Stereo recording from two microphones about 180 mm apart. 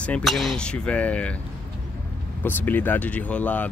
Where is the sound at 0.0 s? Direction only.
5° left (ahead or behind).